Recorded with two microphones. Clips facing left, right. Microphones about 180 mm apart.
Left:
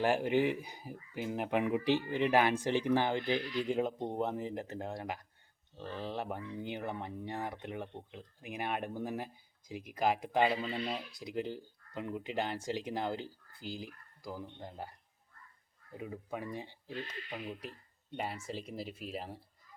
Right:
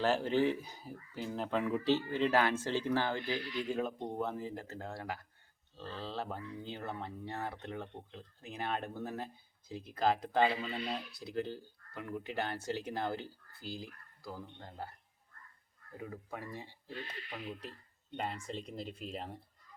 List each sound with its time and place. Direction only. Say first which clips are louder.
0.0 s speech: left 1 dB; 15° left (ahead or behind)